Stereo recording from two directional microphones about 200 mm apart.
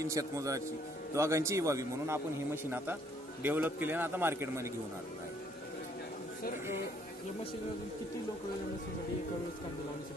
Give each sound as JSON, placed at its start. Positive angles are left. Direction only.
{"t": 0.0, "sound": "a man's voice", "side_deg": -15}
{"t": 6.4, "sound": "speech", "side_deg": 45}